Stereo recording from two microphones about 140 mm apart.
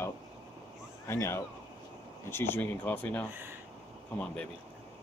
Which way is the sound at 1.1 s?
20° left (ahead or behind).